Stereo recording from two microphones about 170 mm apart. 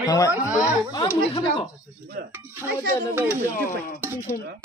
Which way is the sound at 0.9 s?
25° left (ahead or behind).